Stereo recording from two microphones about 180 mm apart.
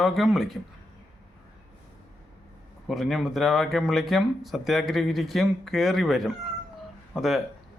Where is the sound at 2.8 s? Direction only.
Centre (ahead or behind).